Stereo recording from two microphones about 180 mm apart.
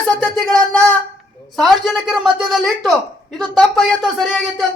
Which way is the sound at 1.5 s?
Centre (ahead or behind).